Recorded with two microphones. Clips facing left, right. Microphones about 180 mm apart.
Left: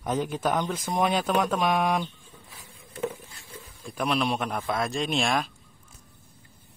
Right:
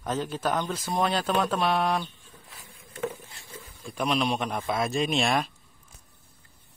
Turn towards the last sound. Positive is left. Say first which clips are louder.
# right 1 dB
turn(degrees=0)  # may be behind; listen again after turning